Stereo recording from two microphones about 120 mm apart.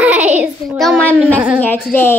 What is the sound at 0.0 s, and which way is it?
Child singing, 10° right (ahead or behind).